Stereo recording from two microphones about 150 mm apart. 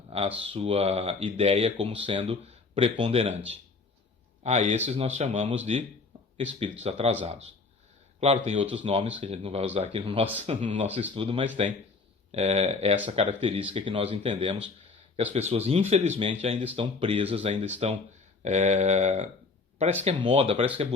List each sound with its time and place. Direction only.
0.3 s speech: 35° right (ahead or behind)
4.4 s speech: 50° right (ahead or behind)
6.1 s a sound: 35° right (ahead or behind)
6.8 s speech: 45° right (ahead or behind)
10.5 s speech: 55° right (ahead or behind)
11.1 s speech: 35° right (ahead or behind)
12.3 s speech: 45° right (ahead or behind)
16.7 s speech: 40° right (ahead or behind)
20.2 s speech: 35° right (ahead or behind)